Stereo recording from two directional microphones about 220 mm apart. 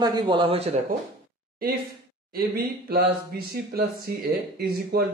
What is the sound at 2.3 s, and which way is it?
Speech, 45° right (ahead or behind).